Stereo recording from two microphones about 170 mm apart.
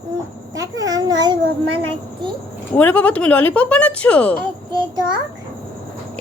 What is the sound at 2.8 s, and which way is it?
A woman's voice, 10° left (ahead or behind).